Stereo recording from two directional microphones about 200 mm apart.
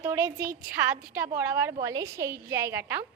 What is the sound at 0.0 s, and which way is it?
A woman's voice, 10° right (ahead or behind).